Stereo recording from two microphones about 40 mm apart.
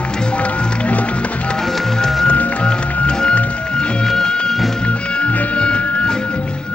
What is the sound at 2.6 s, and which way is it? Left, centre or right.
Music, left.